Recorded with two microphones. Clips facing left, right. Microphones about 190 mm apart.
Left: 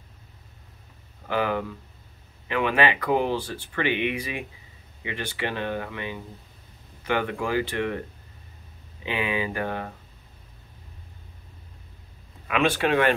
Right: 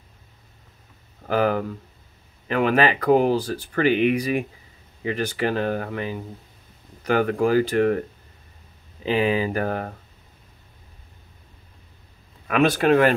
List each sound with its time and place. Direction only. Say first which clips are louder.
1.2 s speech: right 5 dB; 40° right (ahead or behind)
9.0 s speech: right 7 dB; 35° right (ahead or behind)
12.4 s speech: right 5 dB; 40° right (ahead or behind)